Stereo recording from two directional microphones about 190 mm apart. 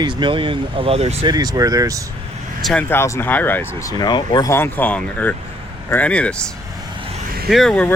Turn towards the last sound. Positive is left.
turn(degrees=5)  # may be behind; listen again after turning